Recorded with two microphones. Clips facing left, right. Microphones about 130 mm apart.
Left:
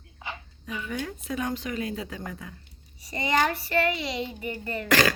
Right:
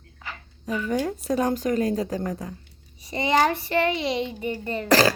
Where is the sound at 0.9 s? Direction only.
40° right (ahead or behind).